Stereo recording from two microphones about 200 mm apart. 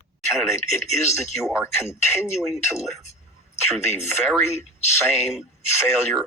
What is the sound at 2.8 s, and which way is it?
Speech, 35° left (ahead or behind).